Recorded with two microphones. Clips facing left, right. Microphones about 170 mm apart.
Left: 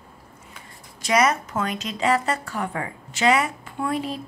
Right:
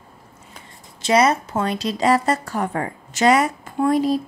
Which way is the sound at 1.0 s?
30° right (ahead or behind).